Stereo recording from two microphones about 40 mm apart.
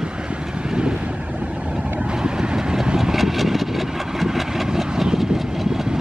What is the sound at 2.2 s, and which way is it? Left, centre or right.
Vehicle, centre.